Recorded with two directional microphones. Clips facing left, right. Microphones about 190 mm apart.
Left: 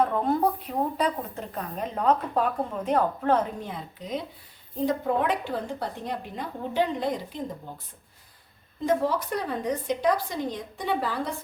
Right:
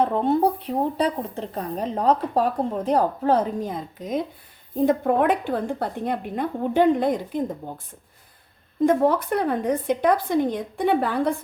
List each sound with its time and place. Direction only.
0.0 s a woman's voice: 25° right (ahead or behind); by 7.8 s 50° right (ahead or behind)
8.9 s a woman's voice: 55° right (ahead or behind)